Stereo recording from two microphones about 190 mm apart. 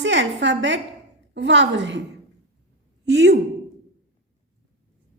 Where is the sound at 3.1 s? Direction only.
65° right (ahead or behind).